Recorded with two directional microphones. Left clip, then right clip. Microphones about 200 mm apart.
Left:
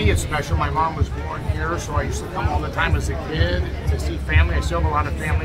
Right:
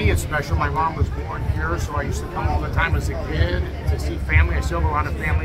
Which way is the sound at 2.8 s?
15° left (ahead or behind).